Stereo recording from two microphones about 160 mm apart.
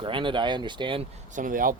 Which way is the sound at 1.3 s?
60° right (ahead or behind).